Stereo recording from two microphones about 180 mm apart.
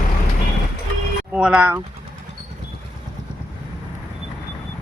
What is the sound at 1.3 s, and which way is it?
Speech, 5° right (ahead or behind).